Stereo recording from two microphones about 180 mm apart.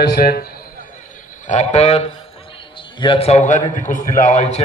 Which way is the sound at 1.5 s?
40° left (ahead or behind).